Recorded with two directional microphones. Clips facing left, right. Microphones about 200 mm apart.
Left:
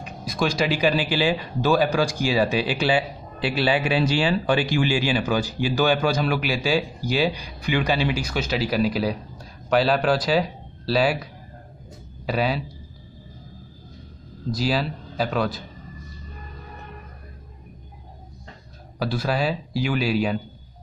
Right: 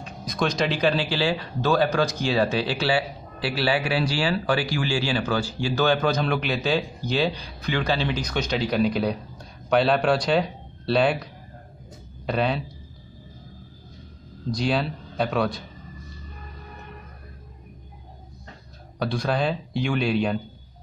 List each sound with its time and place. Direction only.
0.0 s speech: 10° left (ahead or behind)
12.3 s speech: 5° left (ahead or behind)
14.5 s speech: 5° left (ahead or behind)
18.9 s speech: 5° left (ahead or behind)